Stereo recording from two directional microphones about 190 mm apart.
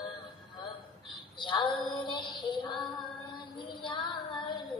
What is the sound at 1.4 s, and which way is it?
Child singing, 25° left (ahead or behind).